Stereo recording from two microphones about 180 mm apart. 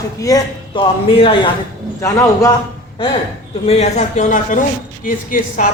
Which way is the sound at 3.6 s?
35° left (ahead or behind).